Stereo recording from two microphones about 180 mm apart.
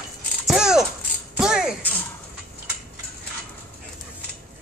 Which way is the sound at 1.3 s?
5° right (ahead or behind).